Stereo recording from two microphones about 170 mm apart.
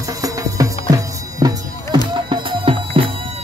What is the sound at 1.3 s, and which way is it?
Music, 20° right (ahead or behind).